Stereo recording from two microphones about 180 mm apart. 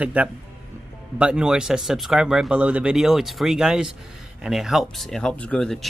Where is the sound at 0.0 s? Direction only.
10° right (ahead or behind).